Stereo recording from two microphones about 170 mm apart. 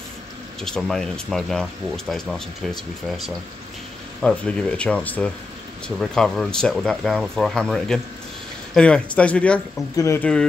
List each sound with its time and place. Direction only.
0.6 s speech: 5° left (ahead or behind)
9.9 s speech: 15° left (ahead or behind)